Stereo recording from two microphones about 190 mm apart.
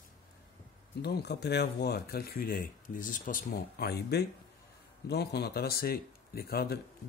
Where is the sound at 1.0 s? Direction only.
60° left (ahead or behind).